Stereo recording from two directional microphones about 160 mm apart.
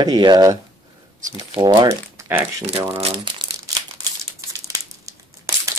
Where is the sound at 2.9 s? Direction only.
35° right (ahead or behind).